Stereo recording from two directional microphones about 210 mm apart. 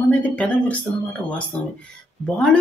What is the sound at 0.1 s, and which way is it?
Speech, 5° left (ahead or behind).